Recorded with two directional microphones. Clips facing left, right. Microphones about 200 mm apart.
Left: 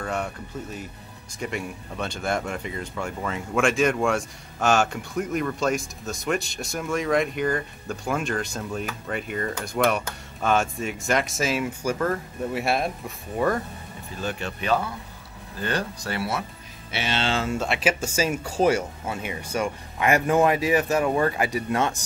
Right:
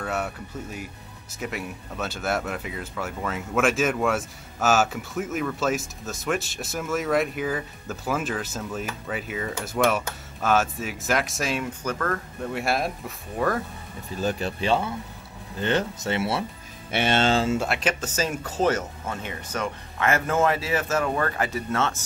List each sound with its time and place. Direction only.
0.0 s speech: 5° right (ahead or behind); by 12.2 s 10° left (ahead or behind)
12.5 s speech: centre (ahead or behind)
14.2 s speech: 30° right (ahead or behind)
16.9 s speech: 50° right (ahead or behind)
17.7 s speech: 10° left (ahead or behind)